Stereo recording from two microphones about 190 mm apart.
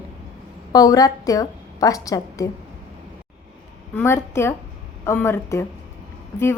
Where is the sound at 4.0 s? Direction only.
15° left (ahead or behind).